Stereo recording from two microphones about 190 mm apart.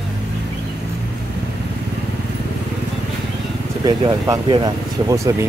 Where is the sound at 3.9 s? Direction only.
20° right (ahead or behind).